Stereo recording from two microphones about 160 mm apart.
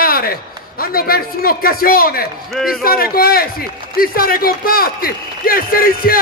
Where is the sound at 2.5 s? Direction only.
Centre (ahead or behind).